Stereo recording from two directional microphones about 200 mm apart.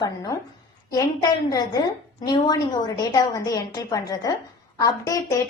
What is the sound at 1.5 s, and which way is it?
A woman's voice, 20° left (ahead or behind).